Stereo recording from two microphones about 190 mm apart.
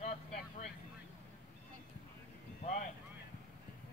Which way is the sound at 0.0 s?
35° left (ahead or behind).